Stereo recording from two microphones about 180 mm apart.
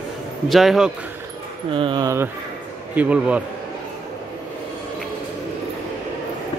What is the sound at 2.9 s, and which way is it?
Speech, 5° right (ahead or behind).